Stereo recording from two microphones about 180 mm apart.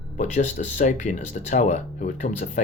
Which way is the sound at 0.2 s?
40° left (ahead or behind).